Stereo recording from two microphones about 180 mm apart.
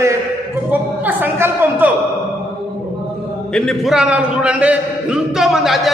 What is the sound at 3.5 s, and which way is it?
A man's voice, 5° left (ahead or behind).